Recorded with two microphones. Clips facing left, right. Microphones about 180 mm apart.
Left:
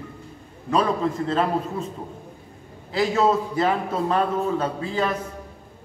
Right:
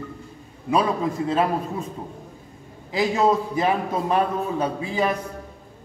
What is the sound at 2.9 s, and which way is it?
A man's voice, 15° right (ahead or behind).